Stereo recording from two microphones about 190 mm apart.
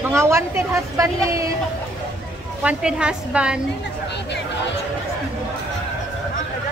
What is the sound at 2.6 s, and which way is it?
Speech, 5° right (ahead or behind).